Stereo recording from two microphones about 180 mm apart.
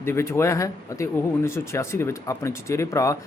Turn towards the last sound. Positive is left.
turn(degrees=15)  # may be behind; listen again after turning